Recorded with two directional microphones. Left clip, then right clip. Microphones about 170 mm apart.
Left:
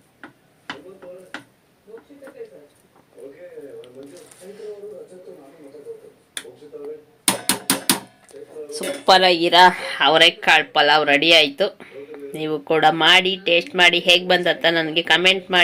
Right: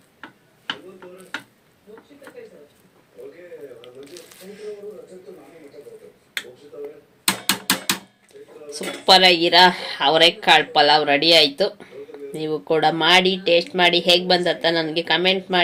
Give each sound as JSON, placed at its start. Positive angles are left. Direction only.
{"t": 8.7, "sound": "speech", "side_deg": 0}